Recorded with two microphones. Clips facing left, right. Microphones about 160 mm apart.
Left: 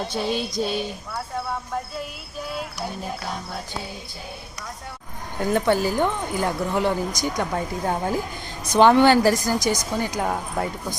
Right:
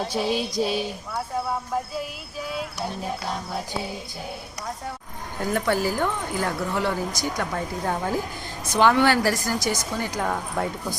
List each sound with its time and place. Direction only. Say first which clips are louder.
0.0 s music: right 1 dB; 5° right (ahead or behind)
5.5 s speech: left 3 dB; 25° left (ahead or behind)
10.5 s music: even; centre (ahead or behind)